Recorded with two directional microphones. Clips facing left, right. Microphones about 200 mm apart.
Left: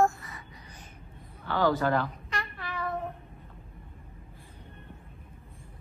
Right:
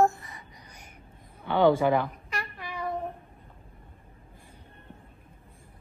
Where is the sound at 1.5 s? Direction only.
20° right (ahead or behind).